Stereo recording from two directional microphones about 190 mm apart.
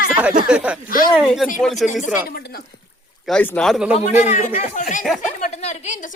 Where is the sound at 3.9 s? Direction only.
35° left (ahead or behind).